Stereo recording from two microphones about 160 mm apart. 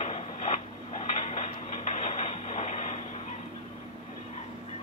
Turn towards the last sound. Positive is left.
turn(degrees=45)  # may be behind; listen again after turning